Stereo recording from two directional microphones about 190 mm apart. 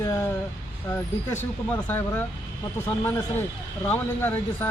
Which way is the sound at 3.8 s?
10° left (ahead or behind).